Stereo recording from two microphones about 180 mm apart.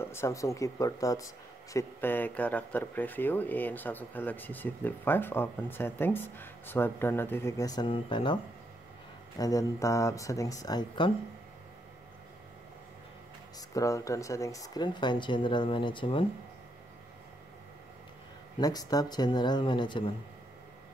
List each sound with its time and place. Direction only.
0.0 s speech: 15° left (ahead or behind)
9.4 s speech: 20° left (ahead or behind)
13.6 s speech: 20° left (ahead or behind)
18.6 s speech: 20° left (ahead or behind)